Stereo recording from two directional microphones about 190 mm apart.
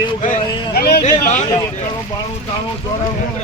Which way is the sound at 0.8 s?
55° left (ahead or behind).